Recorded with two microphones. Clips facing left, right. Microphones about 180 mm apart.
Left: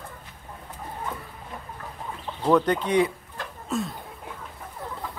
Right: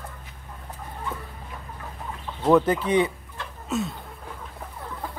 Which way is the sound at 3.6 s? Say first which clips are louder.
Right 1 dB; centre (ahead or behind).